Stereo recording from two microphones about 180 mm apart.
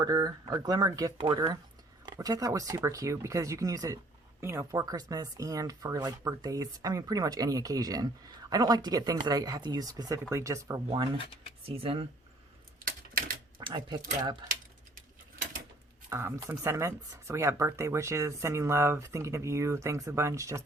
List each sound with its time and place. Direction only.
0.0 s speech: 20° right (ahead or behind)
11.6 s speech: 30° right (ahead or behind)
12.8 s typing: 50° right (ahead or behind)
13.6 s speech: 25° right (ahead or behind)
16.0 s speech: 15° right (ahead or behind)